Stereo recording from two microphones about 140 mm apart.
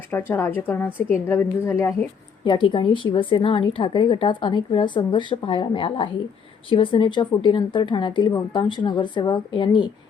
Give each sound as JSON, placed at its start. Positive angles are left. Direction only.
{"t": 0.1, "sound": "a woman's voice", "side_deg": 15}
{"t": 2.4, "sound": "a woman's voice", "side_deg": 35}